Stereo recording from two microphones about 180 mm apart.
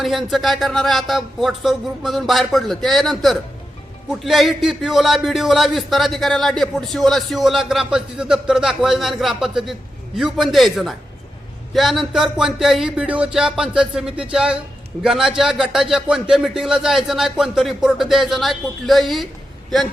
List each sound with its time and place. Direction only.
0.0 s a man's voice: centre (ahead or behind)